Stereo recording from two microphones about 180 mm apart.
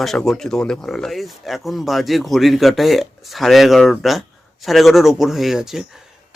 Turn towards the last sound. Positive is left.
turn(degrees=-5)  # may be behind; listen again after turning